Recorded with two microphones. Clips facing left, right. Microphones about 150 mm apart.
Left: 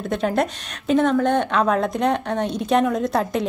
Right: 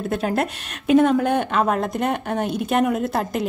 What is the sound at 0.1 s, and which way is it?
A woman's voice, 5° right (ahead or behind).